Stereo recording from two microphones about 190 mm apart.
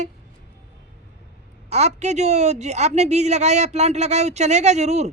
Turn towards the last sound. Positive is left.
turn(degrees=-35)  # may be behind; listen again after turning